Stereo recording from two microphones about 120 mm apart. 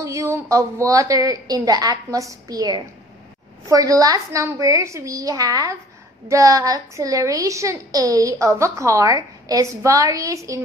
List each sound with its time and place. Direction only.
0.0 s a woman's voice: 25° right (ahead or behind)